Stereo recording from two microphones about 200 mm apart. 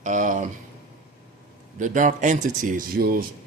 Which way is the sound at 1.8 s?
40° right (ahead or behind).